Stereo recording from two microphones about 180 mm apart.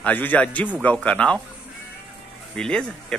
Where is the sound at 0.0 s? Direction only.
10° left (ahead or behind).